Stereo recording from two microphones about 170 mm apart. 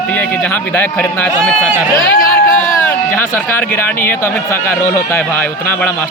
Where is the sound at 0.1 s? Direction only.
10° left (ahead or behind).